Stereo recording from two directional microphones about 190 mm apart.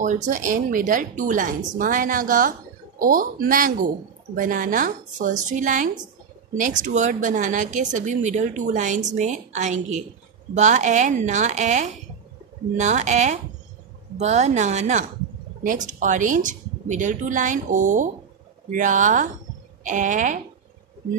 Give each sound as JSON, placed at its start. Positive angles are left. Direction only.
{"t": 0.0, "sound": "speech", "side_deg": -40}